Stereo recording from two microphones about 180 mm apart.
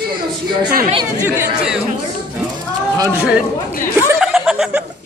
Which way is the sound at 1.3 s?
5° right (ahead or behind).